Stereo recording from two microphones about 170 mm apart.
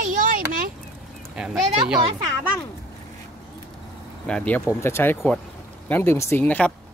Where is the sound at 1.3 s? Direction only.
5° right (ahead or behind).